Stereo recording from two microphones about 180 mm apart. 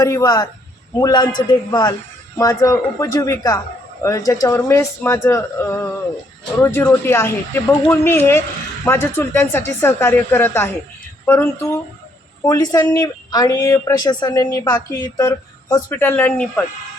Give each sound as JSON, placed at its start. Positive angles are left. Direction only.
{"t": 0.0, "sound": "speech", "side_deg": 20}